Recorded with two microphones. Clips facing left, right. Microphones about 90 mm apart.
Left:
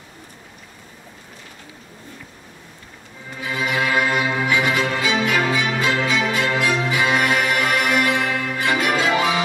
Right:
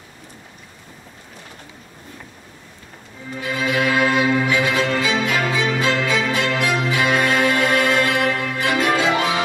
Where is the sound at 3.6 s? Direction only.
20° left (ahead or behind).